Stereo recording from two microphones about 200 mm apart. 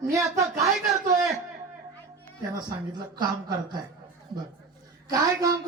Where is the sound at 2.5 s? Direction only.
20° right (ahead or behind).